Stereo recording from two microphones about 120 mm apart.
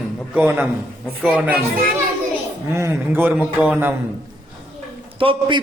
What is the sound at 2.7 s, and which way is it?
A man's voice, 20° right (ahead or behind).